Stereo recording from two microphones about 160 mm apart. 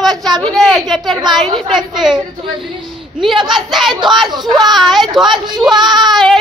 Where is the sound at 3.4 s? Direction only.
Centre (ahead or behind).